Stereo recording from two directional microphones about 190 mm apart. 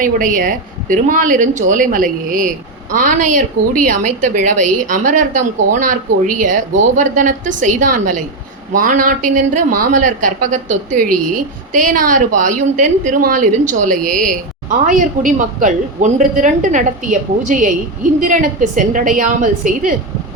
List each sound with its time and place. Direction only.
0.0 s speech: 45° right (ahead or behind)